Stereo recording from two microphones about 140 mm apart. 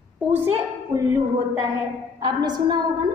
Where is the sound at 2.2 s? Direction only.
30° right (ahead or behind).